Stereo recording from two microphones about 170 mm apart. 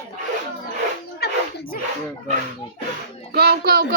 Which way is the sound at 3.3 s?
70° right (ahead or behind).